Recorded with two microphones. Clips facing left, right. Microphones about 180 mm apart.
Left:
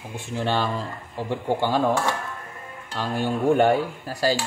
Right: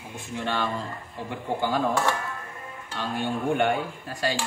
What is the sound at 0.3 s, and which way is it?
Speech, 30° left (ahead or behind).